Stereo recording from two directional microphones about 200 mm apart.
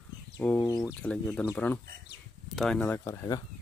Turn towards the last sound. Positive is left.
turn(degrees=15)  # may be behind; listen again after turning